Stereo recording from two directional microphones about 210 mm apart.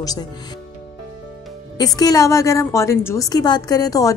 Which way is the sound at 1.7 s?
20° left (ahead or behind).